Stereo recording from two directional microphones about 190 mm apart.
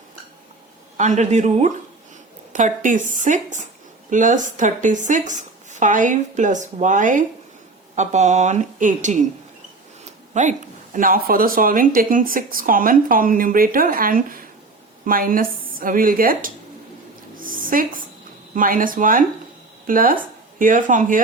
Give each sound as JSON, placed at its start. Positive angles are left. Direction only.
{"t": 0.9, "sound": "speech", "side_deg": -40}
{"t": 10.3, "sound": "speech", "side_deg": -40}
{"t": 17.3, "sound": "a sound", "side_deg": -45}
{"t": 18.5, "sound": "speech", "side_deg": -45}